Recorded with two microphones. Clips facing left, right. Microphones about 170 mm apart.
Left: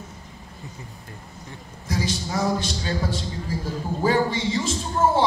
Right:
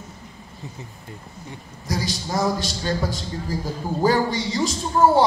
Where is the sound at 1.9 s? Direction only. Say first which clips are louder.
Even; 40° right (ahead or behind).